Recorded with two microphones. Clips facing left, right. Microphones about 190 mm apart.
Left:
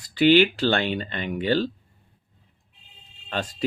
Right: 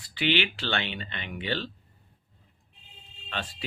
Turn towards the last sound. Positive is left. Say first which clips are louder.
# left 7 dB
turn(degrees=45)  # may be behind; listen again after turning